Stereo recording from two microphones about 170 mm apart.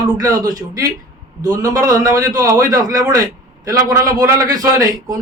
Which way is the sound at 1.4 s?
20° right (ahead or behind).